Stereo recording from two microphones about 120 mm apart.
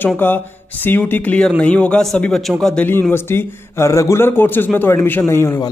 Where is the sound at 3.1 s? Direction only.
20° left (ahead or behind).